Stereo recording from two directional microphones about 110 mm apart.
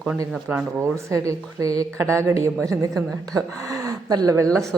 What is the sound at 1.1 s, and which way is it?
A man's voice, 30° right (ahead or behind).